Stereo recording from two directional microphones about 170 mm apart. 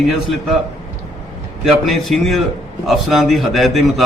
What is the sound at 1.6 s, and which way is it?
A man's voice, centre (ahead or behind).